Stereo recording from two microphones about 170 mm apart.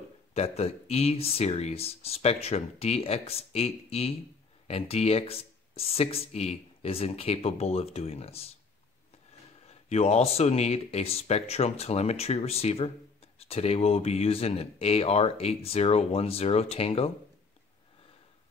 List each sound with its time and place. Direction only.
0.3 s speech: 40° left (ahead or behind)
9.7 s speech: 40° left (ahead or behind)